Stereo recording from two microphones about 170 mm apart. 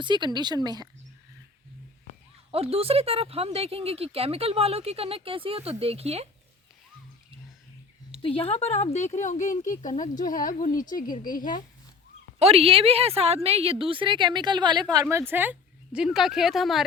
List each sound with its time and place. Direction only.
0.0 s speech: 25° right (ahead or behind)
2.5 s speech: 35° right (ahead or behind)
8.2 s speech: 35° left (ahead or behind); by 11.5 s 55° left (ahead or behind)
12.4 s speech: 35° right (ahead or behind)
15.3 s a woman's voice: 10° right (ahead or behind)